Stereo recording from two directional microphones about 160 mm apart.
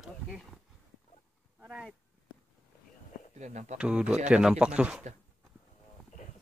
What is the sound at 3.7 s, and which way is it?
Speech, 5° right (ahead or behind).